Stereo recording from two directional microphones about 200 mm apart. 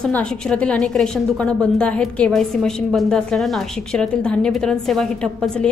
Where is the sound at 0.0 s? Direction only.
5° left (ahead or behind).